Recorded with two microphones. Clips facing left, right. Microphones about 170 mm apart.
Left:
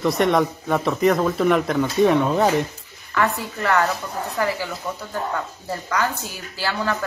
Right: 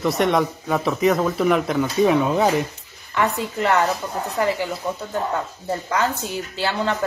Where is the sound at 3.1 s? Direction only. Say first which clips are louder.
Right 1 dB; 20° right (ahead or behind).